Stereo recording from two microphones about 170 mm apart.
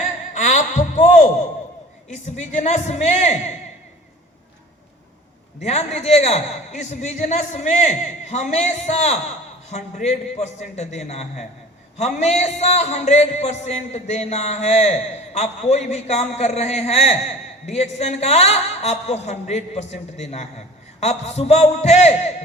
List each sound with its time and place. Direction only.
0.3 s a sound: 45° left (ahead or behind)
2.0 s a man's voice: 45° left (ahead or behind)
5.5 s a man's voice: 40° left (ahead or behind)